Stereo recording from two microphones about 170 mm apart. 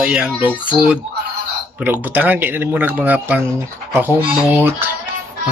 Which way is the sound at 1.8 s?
10° right (ahead or behind).